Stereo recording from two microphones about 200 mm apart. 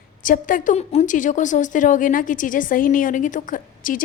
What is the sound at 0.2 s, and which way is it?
A woman's voice, 40° left (ahead or behind).